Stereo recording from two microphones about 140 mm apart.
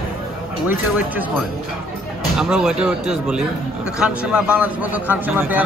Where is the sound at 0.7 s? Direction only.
10° right (ahead or behind).